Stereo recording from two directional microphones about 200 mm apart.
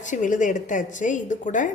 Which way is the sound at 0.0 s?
40° left (ahead or behind).